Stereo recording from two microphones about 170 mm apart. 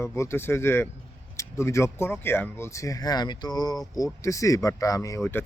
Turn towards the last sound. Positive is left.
turn(degrees=15)  # may be behind; listen again after turning